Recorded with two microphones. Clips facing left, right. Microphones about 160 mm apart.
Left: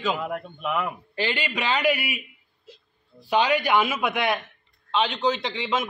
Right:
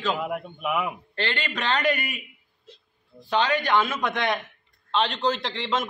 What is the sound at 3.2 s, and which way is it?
A man's voice, 10° left (ahead or behind).